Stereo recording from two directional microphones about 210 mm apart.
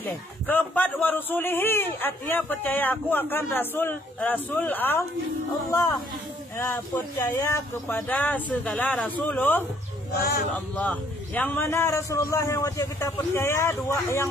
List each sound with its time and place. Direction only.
0.1 s a man's voice: 10° left (ahead or behind)
10.8 s a man's voice: 5° left (ahead or behind)